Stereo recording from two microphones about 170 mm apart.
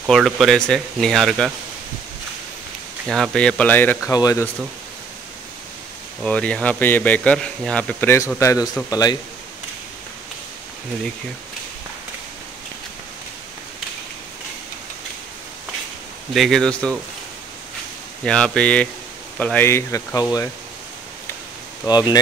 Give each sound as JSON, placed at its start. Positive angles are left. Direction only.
{"t": 0.0, "sound": "speech", "side_deg": 0}
{"t": 3.1, "sound": "speech", "side_deg": 5}
{"t": 6.2, "sound": "speech", "side_deg": 5}
{"t": 16.3, "sound": "speech", "side_deg": 0}
{"t": 18.2, "sound": "speech", "side_deg": 5}
{"t": 21.8, "sound": "speech", "side_deg": 25}